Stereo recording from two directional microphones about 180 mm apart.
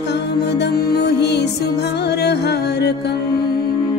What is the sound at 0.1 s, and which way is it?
Music, 70° left (ahead or behind).